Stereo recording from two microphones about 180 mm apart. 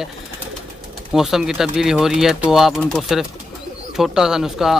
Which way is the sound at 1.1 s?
Centre (ahead or behind).